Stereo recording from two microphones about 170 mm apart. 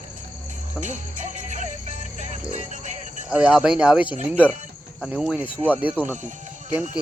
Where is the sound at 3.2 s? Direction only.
5° right (ahead or behind).